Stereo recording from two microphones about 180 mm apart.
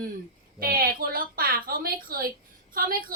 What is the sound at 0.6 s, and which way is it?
A woman's voice, 55° right (ahead or behind).